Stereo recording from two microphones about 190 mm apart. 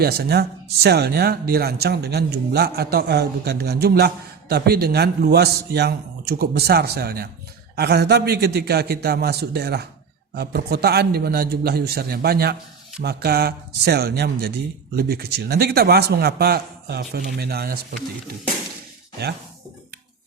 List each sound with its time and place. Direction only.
0.0 s speech: 55° right (ahead or behind)